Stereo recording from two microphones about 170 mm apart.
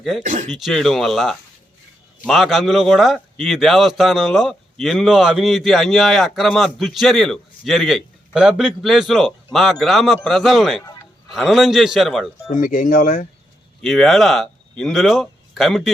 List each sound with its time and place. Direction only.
0.2 s speech: 45° right (ahead or behind)
0.5 s a man's voice: centre (ahead or behind)
12.5 s speech: 50° left (ahead or behind)
13.8 s speech: centre (ahead or behind)